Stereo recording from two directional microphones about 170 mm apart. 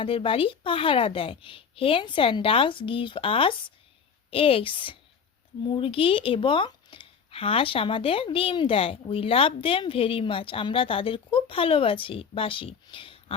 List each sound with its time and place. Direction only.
0.0 s speech: 35° left (ahead or behind)